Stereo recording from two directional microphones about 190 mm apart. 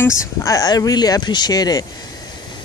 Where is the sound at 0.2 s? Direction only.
15° left (ahead or behind).